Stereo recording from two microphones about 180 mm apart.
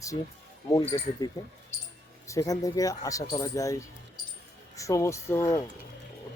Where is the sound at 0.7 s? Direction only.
20° left (ahead or behind).